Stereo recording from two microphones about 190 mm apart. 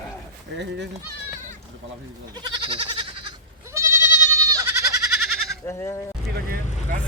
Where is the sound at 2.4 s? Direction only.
25° right (ahead or behind).